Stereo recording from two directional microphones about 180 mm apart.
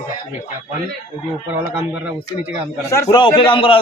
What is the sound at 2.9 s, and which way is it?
Speech, 20° left (ahead or behind).